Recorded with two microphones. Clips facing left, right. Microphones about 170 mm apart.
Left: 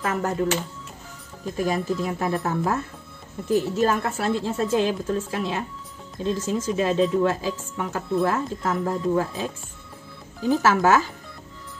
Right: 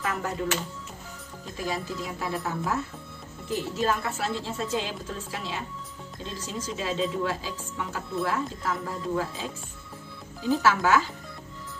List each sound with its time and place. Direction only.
0.0 s speech: 45° left (ahead or behind)
1.6 s speech: 50° left (ahead or behind)
10.5 s speech: 45° left (ahead or behind)